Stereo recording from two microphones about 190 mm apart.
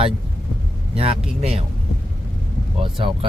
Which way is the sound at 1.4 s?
30° right (ahead or behind).